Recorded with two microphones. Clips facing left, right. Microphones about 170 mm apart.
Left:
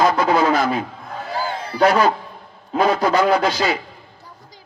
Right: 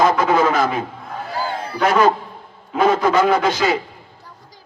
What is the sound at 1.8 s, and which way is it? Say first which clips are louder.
Speech: even; 35° left (ahead or behind).